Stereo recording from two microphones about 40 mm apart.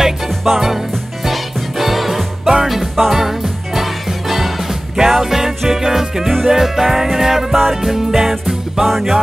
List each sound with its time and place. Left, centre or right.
0.5 s music: centre
2.4 s music: centre
2.7 s music: centre
8.8 s music: centre